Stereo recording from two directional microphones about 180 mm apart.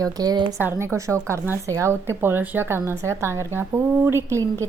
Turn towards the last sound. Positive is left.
turn(degrees=-15)  # may be behind; listen again after turning